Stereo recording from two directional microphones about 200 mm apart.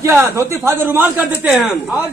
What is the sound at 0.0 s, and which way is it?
A man's voice, 15° right (ahead or behind).